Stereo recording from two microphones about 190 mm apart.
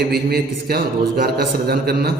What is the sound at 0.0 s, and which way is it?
A man's voice, 55° right (ahead or behind).